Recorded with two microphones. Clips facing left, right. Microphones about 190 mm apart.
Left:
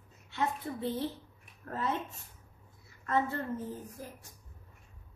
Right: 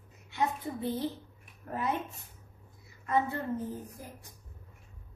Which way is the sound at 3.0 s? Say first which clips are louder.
Right 1 dB; 15° right (ahead or behind).